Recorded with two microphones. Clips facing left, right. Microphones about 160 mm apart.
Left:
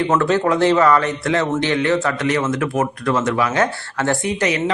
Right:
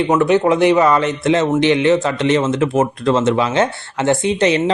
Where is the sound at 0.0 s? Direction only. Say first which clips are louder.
Right 3 dB; 20° right (ahead or behind).